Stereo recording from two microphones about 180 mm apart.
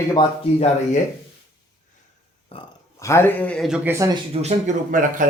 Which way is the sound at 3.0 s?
15° left (ahead or behind).